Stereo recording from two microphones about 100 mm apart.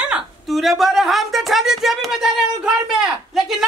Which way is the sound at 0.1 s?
Centre (ahead or behind).